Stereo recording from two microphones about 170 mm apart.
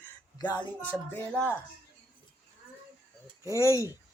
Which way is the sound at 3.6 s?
15° left (ahead or behind).